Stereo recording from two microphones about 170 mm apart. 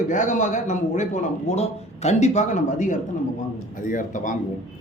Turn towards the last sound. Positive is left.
turn(degrees=50)  # may be behind; listen again after turning